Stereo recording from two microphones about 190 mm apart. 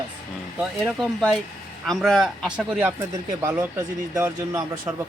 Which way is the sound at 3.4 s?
15° right (ahead or behind).